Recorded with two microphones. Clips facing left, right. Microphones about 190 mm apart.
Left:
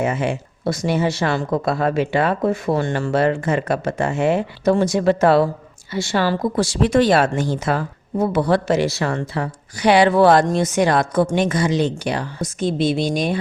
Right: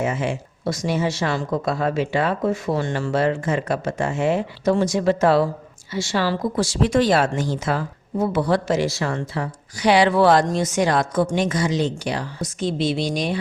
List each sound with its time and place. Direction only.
0.0 s speech: 60° left (ahead or behind)